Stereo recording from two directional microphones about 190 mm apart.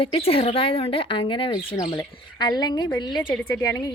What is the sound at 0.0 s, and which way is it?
Speech, 30° left (ahead or behind).